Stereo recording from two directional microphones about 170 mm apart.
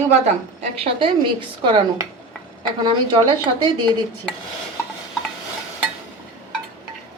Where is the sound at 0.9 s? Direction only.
30° right (ahead or behind).